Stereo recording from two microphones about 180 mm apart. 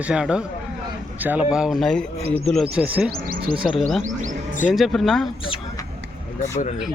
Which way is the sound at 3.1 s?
55° right (ahead or behind).